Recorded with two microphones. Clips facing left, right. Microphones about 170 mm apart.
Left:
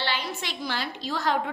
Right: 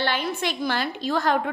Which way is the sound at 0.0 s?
50° right (ahead or behind).